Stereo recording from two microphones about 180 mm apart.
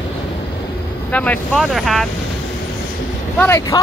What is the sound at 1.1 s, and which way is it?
Speech, 10° left (ahead or behind).